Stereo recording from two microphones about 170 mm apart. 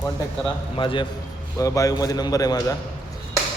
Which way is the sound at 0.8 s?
30° left (ahead or behind).